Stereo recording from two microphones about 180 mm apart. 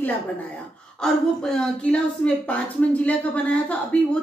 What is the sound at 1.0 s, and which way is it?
Speech, 5° left (ahead or behind).